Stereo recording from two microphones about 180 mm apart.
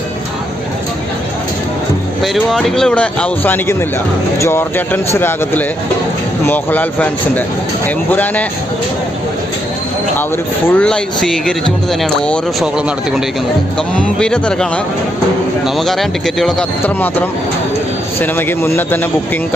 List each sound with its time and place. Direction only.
2.2 s a man's voice: centre (ahead or behind)
10.7 s a man's voice: 5° left (ahead or behind)